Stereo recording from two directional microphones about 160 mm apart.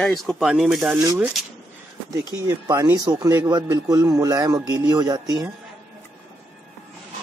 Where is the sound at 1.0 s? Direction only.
20° right (ahead or behind).